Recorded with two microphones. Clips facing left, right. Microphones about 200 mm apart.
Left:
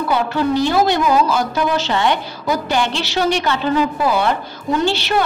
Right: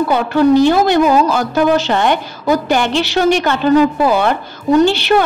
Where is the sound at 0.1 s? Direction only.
50° right (ahead or behind).